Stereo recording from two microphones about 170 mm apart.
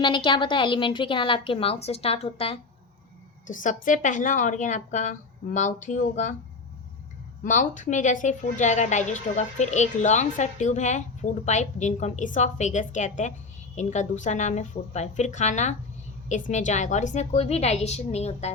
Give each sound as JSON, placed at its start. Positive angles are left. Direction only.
{"t": 0.0, "sound": "a woman's voice", "side_deg": 30}
{"t": 3.4, "sound": "a woman's voice", "side_deg": 50}
{"t": 7.4, "sound": "a woman's voice", "side_deg": 50}